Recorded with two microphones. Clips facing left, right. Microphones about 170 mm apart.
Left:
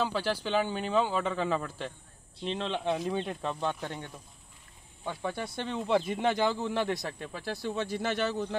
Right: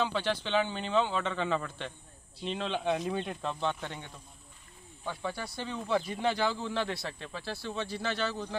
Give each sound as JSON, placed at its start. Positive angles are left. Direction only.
{"t": 0.0, "sound": "speech", "side_deg": 5}
{"t": 5.0, "sound": "speech", "side_deg": 20}